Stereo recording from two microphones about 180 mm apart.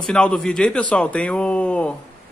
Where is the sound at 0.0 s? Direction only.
5° left (ahead or behind).